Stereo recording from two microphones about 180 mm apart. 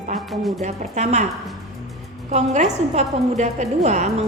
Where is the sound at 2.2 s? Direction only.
40° right (ahead or behind).